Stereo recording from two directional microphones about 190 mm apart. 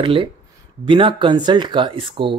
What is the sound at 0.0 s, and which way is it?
Speech, 25° right (ahead or behind).